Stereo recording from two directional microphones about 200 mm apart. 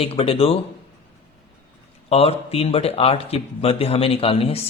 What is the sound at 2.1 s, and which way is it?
A man's voice, 30° left (ahead or behind).